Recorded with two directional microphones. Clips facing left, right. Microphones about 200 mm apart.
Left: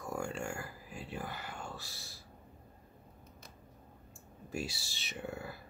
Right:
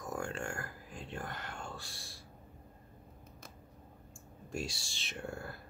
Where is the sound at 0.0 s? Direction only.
10° left (ahead or behind).